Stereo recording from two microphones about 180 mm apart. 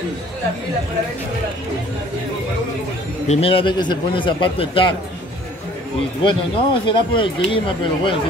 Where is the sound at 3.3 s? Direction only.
30° left (ahead or behind).